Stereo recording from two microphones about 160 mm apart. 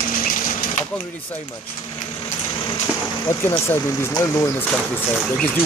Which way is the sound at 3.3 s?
20° left (ahead or behind).